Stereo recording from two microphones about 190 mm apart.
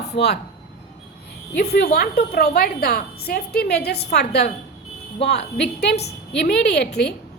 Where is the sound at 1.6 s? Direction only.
60° left (ahead or behind).